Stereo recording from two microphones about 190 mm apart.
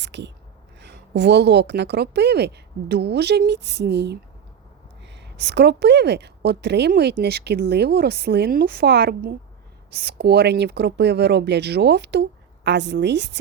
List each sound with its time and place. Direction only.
0.0 s a woman's voice: 65° right (ahead or behind)